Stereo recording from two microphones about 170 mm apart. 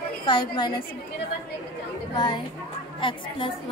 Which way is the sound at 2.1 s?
30° left (ahead or behind).